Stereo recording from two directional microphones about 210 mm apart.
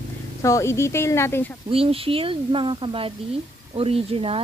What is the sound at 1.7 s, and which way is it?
Speech, 25° right (ahead or behind).